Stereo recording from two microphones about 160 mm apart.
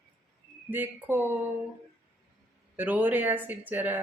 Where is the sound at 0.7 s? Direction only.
10° right (ahead or behind).